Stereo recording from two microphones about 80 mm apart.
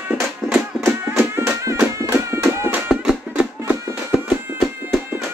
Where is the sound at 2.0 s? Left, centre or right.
Right.